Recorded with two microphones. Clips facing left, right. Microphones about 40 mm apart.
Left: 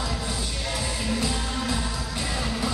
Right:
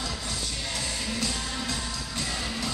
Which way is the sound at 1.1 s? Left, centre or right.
Centre.